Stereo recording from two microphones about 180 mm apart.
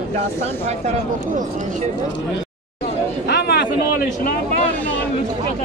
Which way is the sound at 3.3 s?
65° left (ahead or behind).